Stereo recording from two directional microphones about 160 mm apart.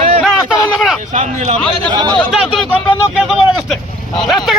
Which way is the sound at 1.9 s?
25° right (ahead or behind).